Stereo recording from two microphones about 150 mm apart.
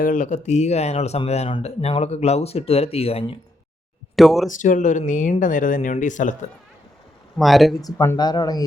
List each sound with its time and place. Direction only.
0.0 s speech: 60° left (ahead or behind); by 3.3 s 40° left (ahead or behind)
4.1 s speech: centre (ahead or behind)
4.4 s speech: 60° left (ahead or behind)
7.3 s speech: centre (ahead or behind)
7.8 s speech: 25° left (ahead or behind)